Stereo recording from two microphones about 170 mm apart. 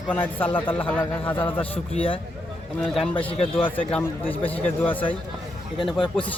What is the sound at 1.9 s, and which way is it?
Speech, 30° left (ahead or behind).